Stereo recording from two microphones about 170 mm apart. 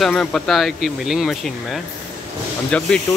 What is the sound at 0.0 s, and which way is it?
Speech, 5° left (ahead or behind).